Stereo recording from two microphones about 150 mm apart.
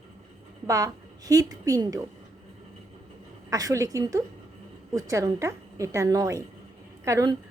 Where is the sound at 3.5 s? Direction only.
25° right (ahead or behind).